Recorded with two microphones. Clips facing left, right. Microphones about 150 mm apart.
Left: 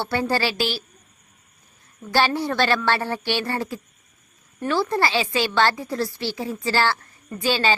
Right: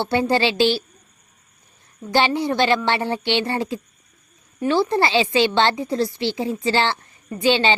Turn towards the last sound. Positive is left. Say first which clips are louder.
# right 4 dB
turn(degrees=-25)  # may be behind; listen again after turning